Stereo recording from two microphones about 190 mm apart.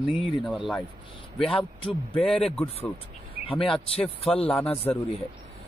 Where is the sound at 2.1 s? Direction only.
5° left (ahead or behind).